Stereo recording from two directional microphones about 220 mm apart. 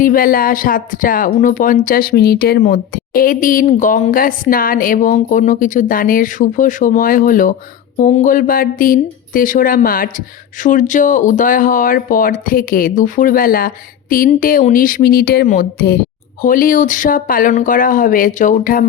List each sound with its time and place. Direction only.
0.0 s speech: 40° left (ahead or behind)